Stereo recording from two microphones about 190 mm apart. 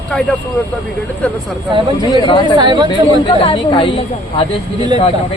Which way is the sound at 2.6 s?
25° right (ahead or behind).